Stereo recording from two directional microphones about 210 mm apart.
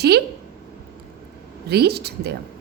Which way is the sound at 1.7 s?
50° right (ahead or behind).